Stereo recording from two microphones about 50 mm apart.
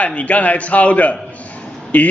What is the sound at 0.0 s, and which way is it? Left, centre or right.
A man's voice, left.